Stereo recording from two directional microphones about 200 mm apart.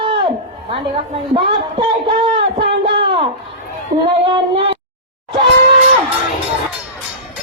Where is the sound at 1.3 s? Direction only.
25° right (ahead or behind).